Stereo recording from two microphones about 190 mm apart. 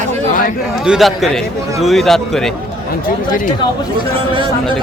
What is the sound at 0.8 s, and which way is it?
Speech, centre (ahead or behind).